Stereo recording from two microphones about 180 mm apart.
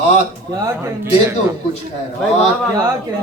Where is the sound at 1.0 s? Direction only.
15° right (ahead or behind).